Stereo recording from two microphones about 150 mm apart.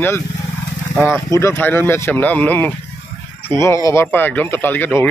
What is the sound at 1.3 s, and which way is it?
Speech, 15° left (ahead or behind).